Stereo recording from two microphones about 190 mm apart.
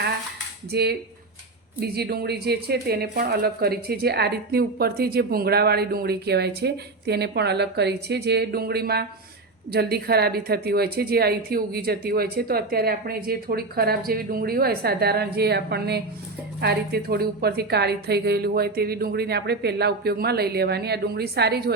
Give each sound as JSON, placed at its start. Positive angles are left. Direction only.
{"t": 0.7, "sound": "speech", "side_deg": -60}